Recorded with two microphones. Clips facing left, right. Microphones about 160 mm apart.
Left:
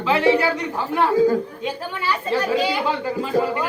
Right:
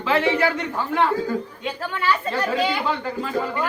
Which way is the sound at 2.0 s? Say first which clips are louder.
Left 1 dB; 10° left (ahead or behind).